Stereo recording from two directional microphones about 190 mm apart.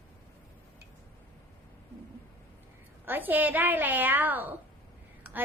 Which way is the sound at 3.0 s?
10° right (ahead or behind).